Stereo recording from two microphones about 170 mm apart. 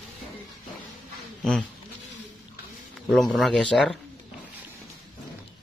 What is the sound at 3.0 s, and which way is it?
Speech, 5° left (ahead or behind).